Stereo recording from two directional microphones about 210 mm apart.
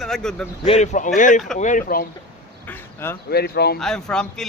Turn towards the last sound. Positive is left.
turn(degrees=5)  # may be behind; listen again after turning